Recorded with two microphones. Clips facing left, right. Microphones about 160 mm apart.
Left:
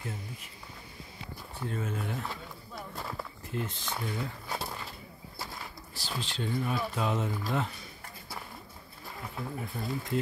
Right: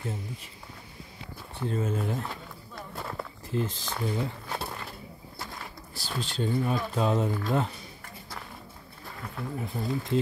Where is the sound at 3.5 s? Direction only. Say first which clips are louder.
Right 5 dB; 30° right (ahead or behind).